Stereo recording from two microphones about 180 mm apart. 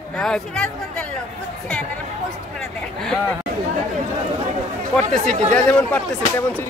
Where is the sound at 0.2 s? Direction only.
5° left (ahead or behind).